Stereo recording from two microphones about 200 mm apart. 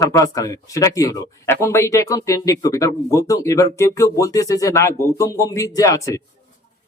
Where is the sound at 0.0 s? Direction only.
15° left (ahead or behind).